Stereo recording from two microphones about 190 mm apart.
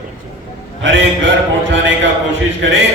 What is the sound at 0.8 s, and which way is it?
Speech, 70° right (ahead or behind).